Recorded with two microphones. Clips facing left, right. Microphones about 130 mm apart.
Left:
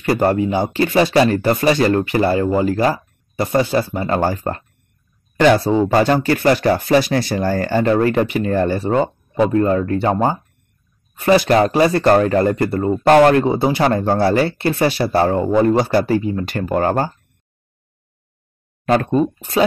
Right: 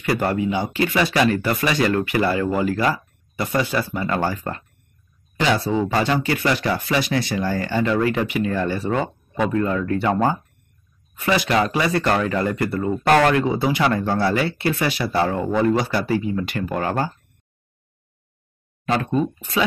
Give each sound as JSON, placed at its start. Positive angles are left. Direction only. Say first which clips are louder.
{"t": 0.0, "sound": "speech", "louder": "left 5 dB", "side_deg": 35}
{"t": 5.4, "sound": "speech", "louder": "left 7 dB", "side_deg": 50}
{"t": 5.8, "sound": "speech", "louder": "left 6 dB", "side_deg": 40}
{"t": 11.1, "sound": "speech", "louder": "left 6 dB", "side_deg": 40}